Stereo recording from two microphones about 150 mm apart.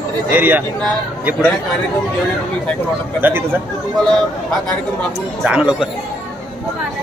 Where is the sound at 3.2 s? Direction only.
15° right (ahead or behind).